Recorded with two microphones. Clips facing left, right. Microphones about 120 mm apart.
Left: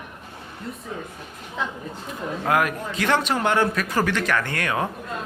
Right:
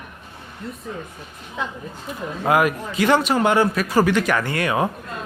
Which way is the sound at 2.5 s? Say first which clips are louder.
Right 4 dB; 10° right (ahead or behind).